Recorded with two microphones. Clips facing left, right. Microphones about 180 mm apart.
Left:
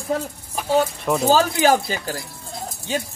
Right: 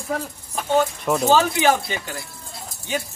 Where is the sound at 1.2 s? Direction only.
40° left (ahead or behind).